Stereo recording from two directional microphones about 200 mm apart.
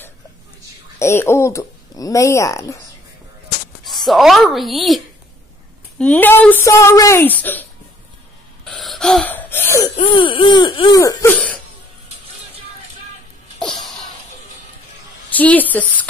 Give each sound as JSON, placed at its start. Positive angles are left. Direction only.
{"t": 0.9, "sound": "speech", "side_deg": 15}
{"t": 4.0, "sound": "speech", "side_deg": 0}
{"t": 8.6, "sound": "gasp", "side_deg": 0}
{"t": 11.3, "sound": "cough", "side_deg": 5}
{"t": 13.6, "sound": "a sound", "side_deg": 0}
{"t": 15.3, "sound": "speech", "side_deg": 10}